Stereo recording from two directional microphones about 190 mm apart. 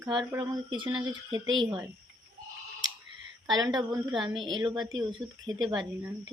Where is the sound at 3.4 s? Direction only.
20° right (ahead or behind).